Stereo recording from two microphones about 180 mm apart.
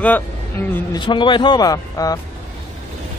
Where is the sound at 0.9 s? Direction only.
25° left (ahead or behind).